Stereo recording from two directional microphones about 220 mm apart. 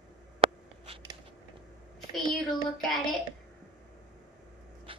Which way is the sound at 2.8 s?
Centre (ahead or behind).